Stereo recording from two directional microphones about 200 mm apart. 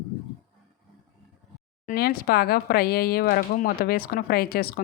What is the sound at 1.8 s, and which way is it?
Speech, 45° left (ahead or behind).